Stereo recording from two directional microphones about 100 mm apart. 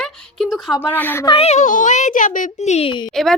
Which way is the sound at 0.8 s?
20° left (ahead or behind).